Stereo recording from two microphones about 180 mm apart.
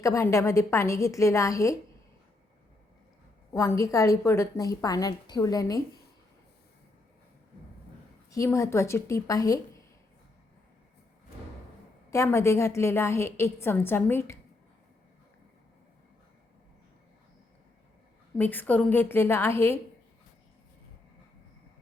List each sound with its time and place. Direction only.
0.0 s a woman's voice: 15° left (ahead or behind)
3.5 s a woman's voice: 15° left (ahead or behind)
8.3 s a woman's voice: 15° left (ahead or behind)
12.1 s a woman's voice: 15° left (ahead or behind)
18.3 s a woman's voice: 10° left (ahead or behind)